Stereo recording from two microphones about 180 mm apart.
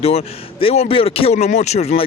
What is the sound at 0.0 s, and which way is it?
Speech, 35° left (ahead or behind).